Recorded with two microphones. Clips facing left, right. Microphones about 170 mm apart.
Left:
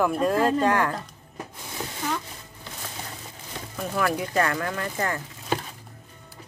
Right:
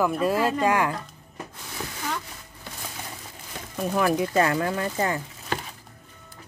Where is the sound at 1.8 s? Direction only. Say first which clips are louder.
Left 1 dB; 20° left (ahead or behind).